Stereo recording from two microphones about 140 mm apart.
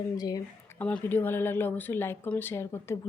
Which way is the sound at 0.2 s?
25° left (ahead or behind).